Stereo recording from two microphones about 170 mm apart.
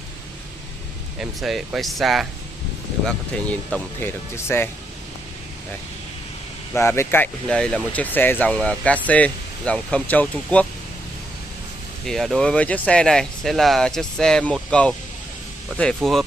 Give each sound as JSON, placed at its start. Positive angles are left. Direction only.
{"t": 1.2, "sound": "speech", "side_deg": -5}
{"t": 6.7, "sound": "speech", "side_deg": 15}
{"t": 12.1, "sound": "speech", "side_deg": 0}